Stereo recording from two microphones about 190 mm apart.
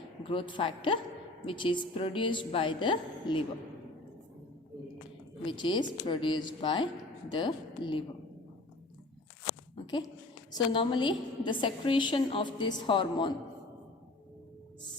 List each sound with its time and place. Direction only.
0.3 s a woman's voice: 25° left (ahead or behind)
5.5 s a woman's voice: 25° left (ahead or behind)
9.8 s a sound: 20° left (ahead or behind)
10.5 s a woman's voice: 25° left (ahead or behind)